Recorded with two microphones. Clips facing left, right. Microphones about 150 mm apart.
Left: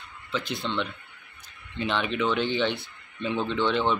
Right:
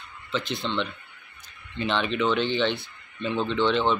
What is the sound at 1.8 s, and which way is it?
Speech, 10° left (ahead or behind).